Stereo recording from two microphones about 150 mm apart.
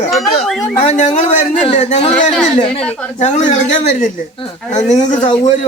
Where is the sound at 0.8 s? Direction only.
55° left (ahead or behind).